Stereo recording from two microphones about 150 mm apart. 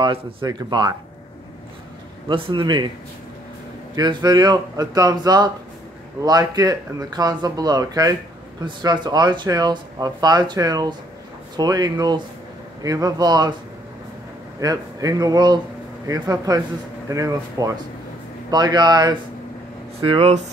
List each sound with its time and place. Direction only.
0.0 s speech: 35° right (ahead or behind)
2.2 s a man's voice: 35° right (ahead or behind)
3.9 s speech: 30° right (ahead or behind)
14.6 s speech: 25° right (ahead or behind)
20.0 s a man's voice: 40° right (ahead or behind)